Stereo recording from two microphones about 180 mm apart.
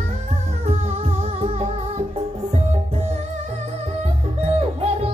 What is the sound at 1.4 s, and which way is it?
Music, 35° right (ahead or behind).